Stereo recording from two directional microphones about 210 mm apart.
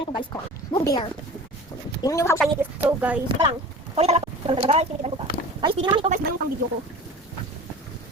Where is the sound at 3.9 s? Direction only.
30° right (ahead or behind).